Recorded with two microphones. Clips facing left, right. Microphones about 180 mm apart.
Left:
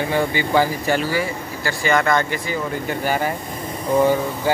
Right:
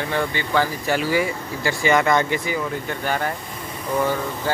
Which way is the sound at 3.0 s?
5° left (ahead or behind).